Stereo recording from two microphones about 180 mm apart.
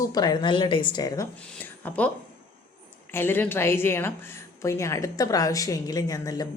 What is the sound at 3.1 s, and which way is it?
A woman's voice, 10° left (ahead or behind).